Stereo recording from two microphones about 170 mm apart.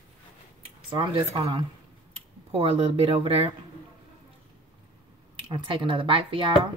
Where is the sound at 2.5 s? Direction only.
35° right (ahead or behind).